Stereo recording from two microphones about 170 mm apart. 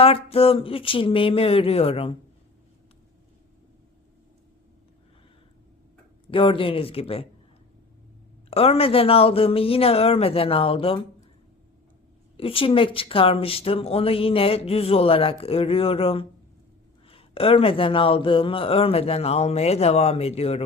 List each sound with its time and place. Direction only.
0.0 s a woman's voice: 35° left (ahead or behind)
6.2 s a woman's voice: 30° left (ahead or behind)
8.4 s a woman's voice: 35° left (ahead or behind)
12.4 s a woman's voice: 35° left (ahead or behind)